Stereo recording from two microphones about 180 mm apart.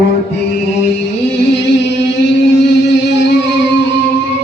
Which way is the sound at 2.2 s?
75° left (ahead or behind).